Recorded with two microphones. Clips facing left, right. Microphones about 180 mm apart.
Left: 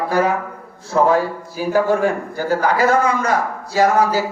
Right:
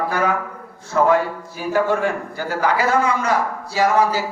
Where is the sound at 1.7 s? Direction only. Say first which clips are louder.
Left 3 dB; 40° left (ahead or behind).